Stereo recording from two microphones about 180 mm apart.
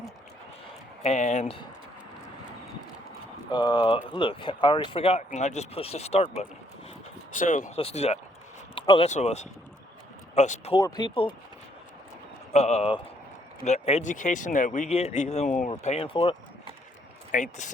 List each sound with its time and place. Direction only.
1.0 s speech: 40° left (ahead or behind)
3.5 s speech: 25° left (ahead or behind)
7.3 s speech: 45° left (ahead or behind)
7.8 s speech: 35° left (ahead or behind)
10.8 s speech: 25° left (ahead or behind)
12.5 s speech: 35° left (ahead or behind)
17.3 s speech: 45° left (ahead or behind)